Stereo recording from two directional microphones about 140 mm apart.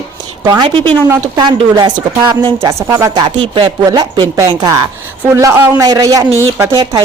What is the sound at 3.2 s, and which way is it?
Speech, 35° right (ahead or behind).